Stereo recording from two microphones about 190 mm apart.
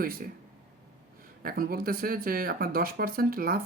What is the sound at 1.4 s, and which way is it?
Speech, 50° right (ahead or behind).